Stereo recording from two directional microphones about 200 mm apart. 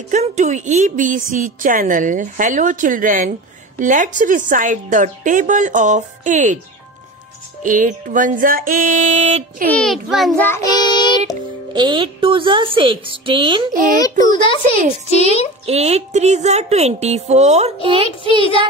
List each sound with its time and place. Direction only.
0.1 s speech: 35° right (ahead or behind)
7.6 s speech: 40° right (ahead or behind)
9.7 s a child's voice: 5° left (ahead or behind); by 11.3 s 20° left (ahead or behind)
11.7 s speech: 25° right (ahead or behind)
13.9 s a child's voice: 20° left (ahead or behind)
15.6 s speech: 30° right (ahead or behind)